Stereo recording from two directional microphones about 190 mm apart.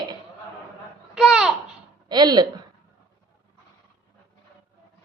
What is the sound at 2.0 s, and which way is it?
Speech, 20° right (ahead or behind).